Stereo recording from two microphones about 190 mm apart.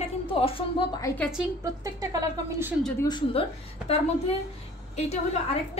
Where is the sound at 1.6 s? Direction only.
20° right (ahead or behind).